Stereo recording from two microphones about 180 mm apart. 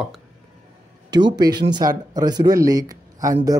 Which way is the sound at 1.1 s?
25° right (ahead or behind).